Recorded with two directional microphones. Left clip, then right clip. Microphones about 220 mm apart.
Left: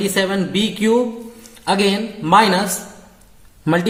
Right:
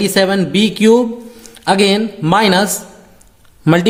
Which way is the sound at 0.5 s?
45° right (ahead or behind).